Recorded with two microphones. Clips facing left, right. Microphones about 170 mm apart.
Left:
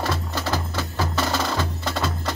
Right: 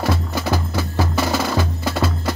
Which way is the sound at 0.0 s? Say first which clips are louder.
Right 4 dB; 10° right (ahead or behind).